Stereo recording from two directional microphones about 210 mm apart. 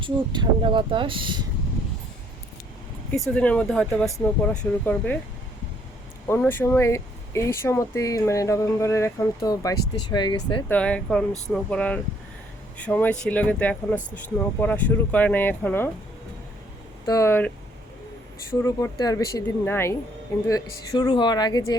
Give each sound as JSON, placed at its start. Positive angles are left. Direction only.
{"t": 0.0, "sound": "speech", "side_deg": -20}
{"t": 3.1, "sound": "speech", "side_deg": 5}
{"t": 6.2, "sound": "speech", "side_deg": 10}
{"t": 10.7, "sound": "speech", "side_deg": 5}
{"t": 17.1, "sound": "speech", "side_deg": 15}
{"t": 18.6, "sound": "speech", "side_deg": 15}